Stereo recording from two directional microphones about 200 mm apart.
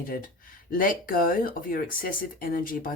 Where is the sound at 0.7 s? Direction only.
45° left (ahead or behind).